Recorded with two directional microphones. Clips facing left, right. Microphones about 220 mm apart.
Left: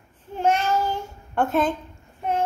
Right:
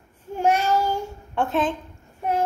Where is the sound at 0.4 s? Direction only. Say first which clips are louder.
Right 1 dB; 10° right (ahead or behind).